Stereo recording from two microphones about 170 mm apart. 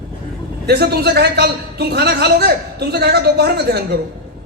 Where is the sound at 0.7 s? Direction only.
70° right (ahead or behind).